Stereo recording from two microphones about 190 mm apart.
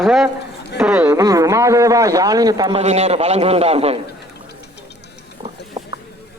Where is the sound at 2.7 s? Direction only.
35° right (ahead or behind).